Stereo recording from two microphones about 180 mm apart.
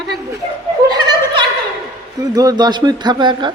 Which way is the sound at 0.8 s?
25° right (ahead or behind).